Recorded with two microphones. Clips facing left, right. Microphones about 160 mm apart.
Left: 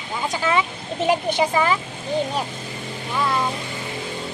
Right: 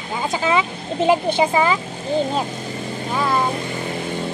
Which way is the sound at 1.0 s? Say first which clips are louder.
Right 3 dB; 30° right (ahead or behind).